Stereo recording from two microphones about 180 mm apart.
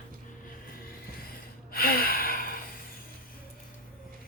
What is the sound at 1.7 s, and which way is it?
Gasp, 55° left (ahead or behind).